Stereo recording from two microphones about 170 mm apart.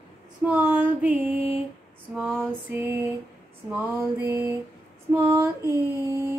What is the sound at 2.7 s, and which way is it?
Female singing, 10° right (ahead or behind).